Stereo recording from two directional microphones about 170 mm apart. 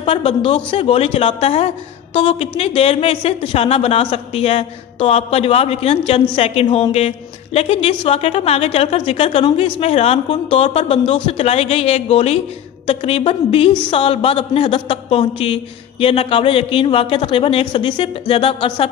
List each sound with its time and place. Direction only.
0.0 s a woman's voice: 35° left (ahead or behind)